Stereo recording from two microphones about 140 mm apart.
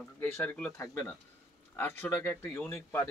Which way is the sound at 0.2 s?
10° left (ahead or behind).